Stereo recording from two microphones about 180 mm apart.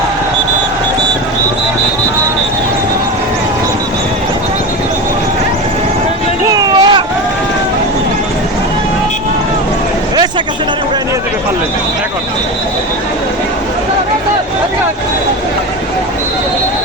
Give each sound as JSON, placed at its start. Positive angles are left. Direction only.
{"t": 6.5, "sound": "vehicle", "side_deg": -25}